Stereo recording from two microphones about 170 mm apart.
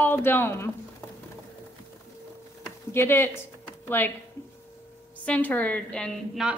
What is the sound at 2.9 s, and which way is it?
A woman's voice, 15° left (ahead or behind).